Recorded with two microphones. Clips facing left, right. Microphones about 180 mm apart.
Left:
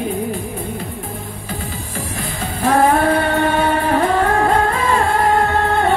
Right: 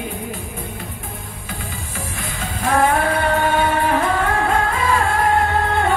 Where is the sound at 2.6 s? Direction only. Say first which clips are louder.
Left 4 dB; 40° left (ahead or behind).